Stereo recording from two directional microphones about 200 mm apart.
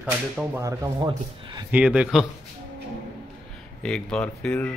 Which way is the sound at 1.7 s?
5° right (ahead or behind).